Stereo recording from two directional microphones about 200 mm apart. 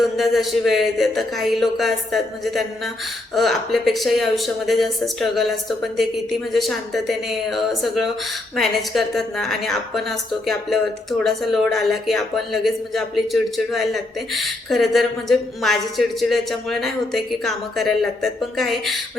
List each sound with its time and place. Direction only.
0.0 s speech: centre (ahead or behind)